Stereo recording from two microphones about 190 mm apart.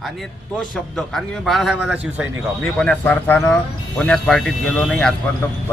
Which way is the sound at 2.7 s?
5° left (ahead or behind).